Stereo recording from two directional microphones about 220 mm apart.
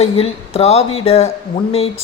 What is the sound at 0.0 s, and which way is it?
Speech, 30° left (ahead or behind).